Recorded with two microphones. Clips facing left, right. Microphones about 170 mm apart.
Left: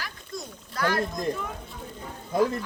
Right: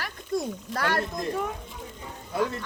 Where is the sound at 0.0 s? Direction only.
60° right (ahead or behind).